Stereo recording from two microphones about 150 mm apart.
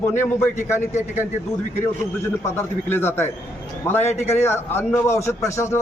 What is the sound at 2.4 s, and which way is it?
Speech, 15° left (ahead or behind).